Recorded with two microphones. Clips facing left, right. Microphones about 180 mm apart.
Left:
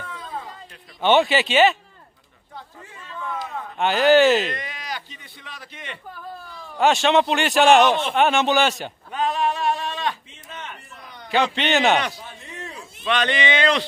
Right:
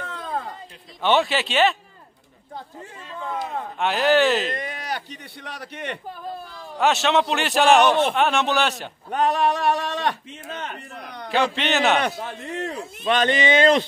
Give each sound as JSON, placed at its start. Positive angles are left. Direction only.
{"t": 0.0, "sound": "a sound", "side_deg": -60}
{"t": 1.0, "sound": "a man's voice", "side_deg": 0}
{"t": 3.1, "sound": "speech", "side_deg": -30}
{"t": 3.7, "sound": "a man's voice", "side_deg": 0}
{"t": 4.6, "sound": "a man's voice", "side_deg": -60}
{"t": 6.8, "sound": "a man's voice", "side_deg": 0}
{"t": 9.1, "sound": "a man's voice", "side_deg": -65}
{"t": 10.9, "sound": "a sound", "side_deg": -65}
{"t": 11.2, "sound": "a man's voice", "side_deg": 0}
{"t": 12.0, "sound": "a sound", "side_deg": -60}
{"t": 13.0, "sound": "speech", "side_deg": -45}